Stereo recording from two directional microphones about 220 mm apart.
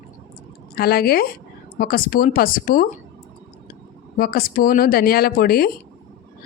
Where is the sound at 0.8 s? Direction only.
45° left (ahead or behind).